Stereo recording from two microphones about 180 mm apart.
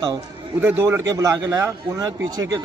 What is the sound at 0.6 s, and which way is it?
A man's voice, 10° right (ahead or behind).